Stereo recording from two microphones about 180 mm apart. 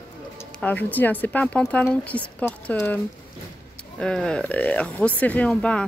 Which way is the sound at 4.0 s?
5° left (ahead or behind).